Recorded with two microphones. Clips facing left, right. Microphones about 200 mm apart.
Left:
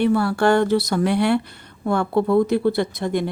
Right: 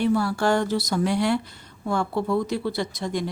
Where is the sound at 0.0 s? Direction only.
60° left (ahead or behind).